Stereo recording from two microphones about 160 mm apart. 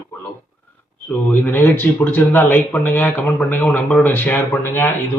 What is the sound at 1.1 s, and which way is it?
Speech, 10° left (ahead or behind).